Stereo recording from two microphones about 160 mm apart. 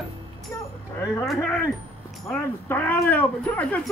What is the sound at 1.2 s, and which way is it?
Speech, 5° left (ahead or behind).